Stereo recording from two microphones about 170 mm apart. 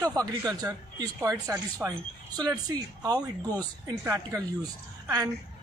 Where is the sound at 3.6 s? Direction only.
20° right (ahead or behind).